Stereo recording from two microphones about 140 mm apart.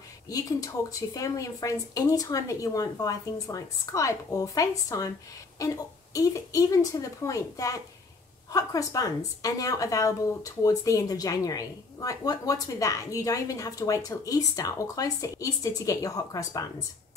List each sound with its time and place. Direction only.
0.3 s speech: 25° left (ahead or behind)